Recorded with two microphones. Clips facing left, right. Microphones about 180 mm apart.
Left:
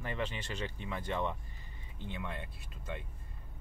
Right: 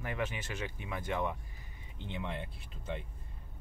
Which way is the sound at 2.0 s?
20° right (ahead or behind).